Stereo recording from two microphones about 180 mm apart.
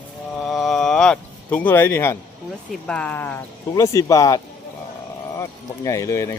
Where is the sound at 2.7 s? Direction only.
5° left (ahead or behind).